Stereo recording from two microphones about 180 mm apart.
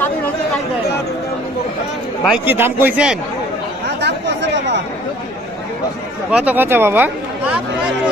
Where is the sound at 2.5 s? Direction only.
10° right (ahead or behind).